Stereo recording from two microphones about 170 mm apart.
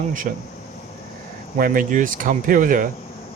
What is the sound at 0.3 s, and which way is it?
Speech, 55° right (ahead or behind).